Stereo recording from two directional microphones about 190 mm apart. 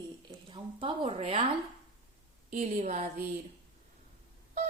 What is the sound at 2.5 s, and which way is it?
Speech, 40° right (ahead or behind).